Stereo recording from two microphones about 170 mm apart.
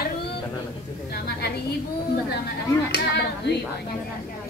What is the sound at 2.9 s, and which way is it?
Speech, 80° left.